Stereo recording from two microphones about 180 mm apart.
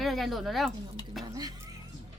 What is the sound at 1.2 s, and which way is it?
Speech, 20° right (ahead or behind).